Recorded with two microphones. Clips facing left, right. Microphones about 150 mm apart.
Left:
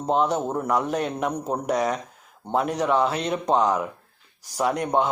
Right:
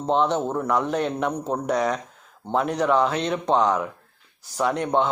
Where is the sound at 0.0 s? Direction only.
10° left (ahead or behind).